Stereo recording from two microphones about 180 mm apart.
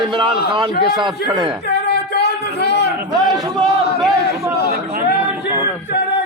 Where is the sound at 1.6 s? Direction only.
65° left (ahead or behind).